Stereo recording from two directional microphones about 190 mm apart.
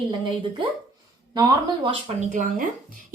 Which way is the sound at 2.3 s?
40° right (ahead or behind).